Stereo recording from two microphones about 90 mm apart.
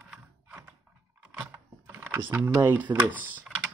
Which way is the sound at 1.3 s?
25° right (ahead or behind).